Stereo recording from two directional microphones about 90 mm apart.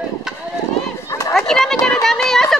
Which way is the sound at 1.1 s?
35° left (ahead or behind).